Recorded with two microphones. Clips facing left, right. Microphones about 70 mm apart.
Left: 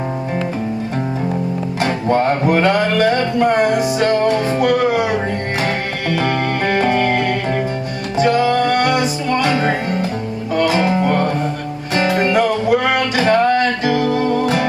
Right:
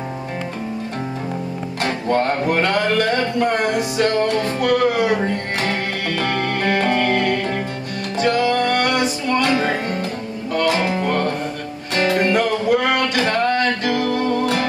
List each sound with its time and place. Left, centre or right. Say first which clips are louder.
1.8 s music: left 3 dB; centre